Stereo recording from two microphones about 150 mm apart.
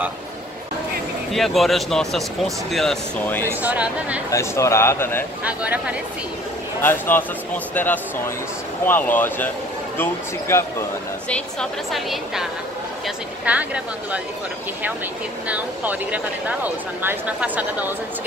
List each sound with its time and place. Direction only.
1.3 s speech: centre (ahead or behind)
3.4 s speech: 10° right (ahead or behind)
4.3 s speech: 20° left (ahead or behind)
5.4 s speech: 10° right (ahead or behind)
6.8 s speech: 15° left (ahead or behind)
10.5 s speech: 15° left (ahead or behind)
11.2 s speech: 5° left (ahead or behind)
13.5 s speech: 10° right (ahead or behind)
15.4 s speech: 10° right (ahead or behind)